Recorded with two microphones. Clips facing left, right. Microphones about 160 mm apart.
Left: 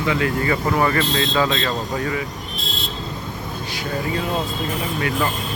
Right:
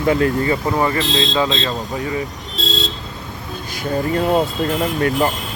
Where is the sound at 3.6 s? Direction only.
45° right (ahead or behind); by 4.9 s 70° right (ahead or behind).